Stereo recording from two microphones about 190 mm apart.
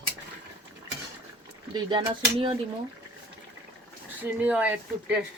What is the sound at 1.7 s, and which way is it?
Speech, 25° right (ahead or behind).